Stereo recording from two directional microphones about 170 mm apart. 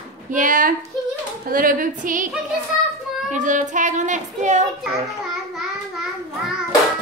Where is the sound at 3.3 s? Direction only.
45° right (ahead or behind).